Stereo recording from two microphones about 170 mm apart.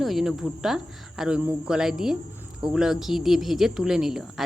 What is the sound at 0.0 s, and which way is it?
Speech, centre (ahead or behind).